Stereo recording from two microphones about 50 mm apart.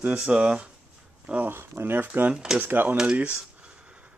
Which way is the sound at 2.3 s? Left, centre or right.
Centre.